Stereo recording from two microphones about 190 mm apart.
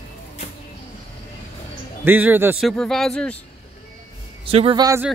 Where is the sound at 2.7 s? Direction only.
Centre (ahead or behind).